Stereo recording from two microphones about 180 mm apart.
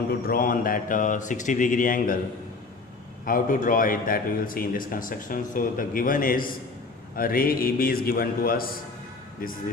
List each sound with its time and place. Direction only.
0.3 s a man's voice: 50° left (ahead or behind)
3.2 s a man's voice: 50° left (ahead or behind)